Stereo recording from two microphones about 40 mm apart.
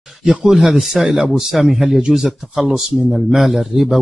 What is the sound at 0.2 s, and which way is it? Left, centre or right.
Speech, centre.